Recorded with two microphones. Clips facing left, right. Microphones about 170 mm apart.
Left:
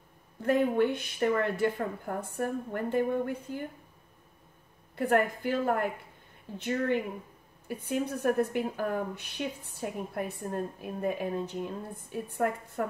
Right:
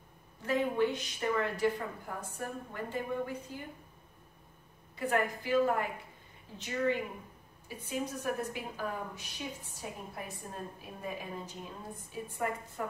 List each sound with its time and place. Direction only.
0.4 s a woman's voice: 55° left (ahead or behind)
4.9 s a woman's voice: 55° left (ahead or behind)